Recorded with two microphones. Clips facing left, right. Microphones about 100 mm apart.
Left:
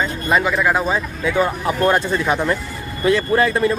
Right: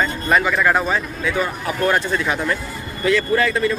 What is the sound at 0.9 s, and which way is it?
Speech, 25° left (ahead or behind).